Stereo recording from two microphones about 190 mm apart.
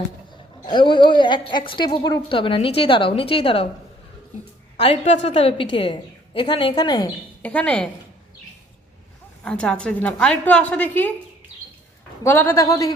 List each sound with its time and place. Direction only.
0.6 s a woman's voice: 25° left (ahead or behind)
4.8 s a woman's voice: 30° left (ahead or behind)
7.4 s a woman's voice: 5° left (ahead or behind)
9.4 s a woman's voice: 5° left (ahead or behind)
12.2 s a woman's voice: 10° left (ahead or behind)